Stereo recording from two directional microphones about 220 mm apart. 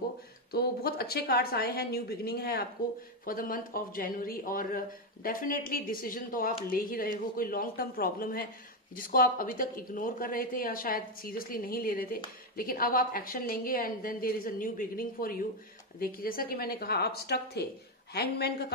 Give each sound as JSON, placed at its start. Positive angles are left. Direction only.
{"t": 0.5, "sound": "a woman's voice", "side_deg": 45}